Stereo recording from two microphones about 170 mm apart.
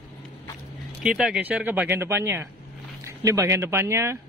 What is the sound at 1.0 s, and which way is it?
Speech, 5° right (ahead or behind).